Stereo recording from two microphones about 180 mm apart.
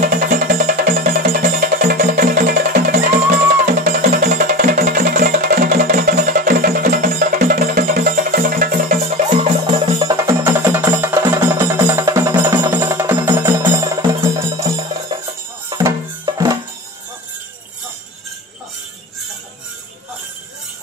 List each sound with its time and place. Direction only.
0.0 s music: 50° right (ahead or behind)
9.8 s music: 25° right (ahead or behind)